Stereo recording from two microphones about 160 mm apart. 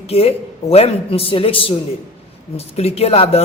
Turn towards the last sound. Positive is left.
turn(degrees=40)  # may be behind; listen again after turning